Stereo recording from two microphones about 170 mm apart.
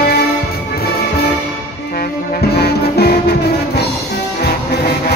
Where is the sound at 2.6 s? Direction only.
70° left (ahead or behind).